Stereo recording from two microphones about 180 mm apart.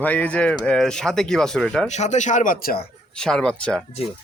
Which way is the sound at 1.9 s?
40° left (ahead or behind).